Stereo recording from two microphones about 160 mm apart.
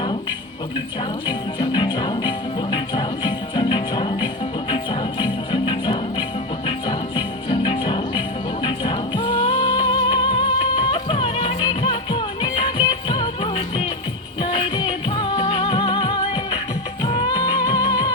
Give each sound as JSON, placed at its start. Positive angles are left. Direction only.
{"t": 1.5, "sound": "music", "side_deg": 30}